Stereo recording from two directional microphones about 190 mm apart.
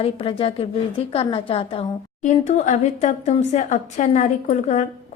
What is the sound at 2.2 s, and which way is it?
Speech, 40° left (ahead or behind).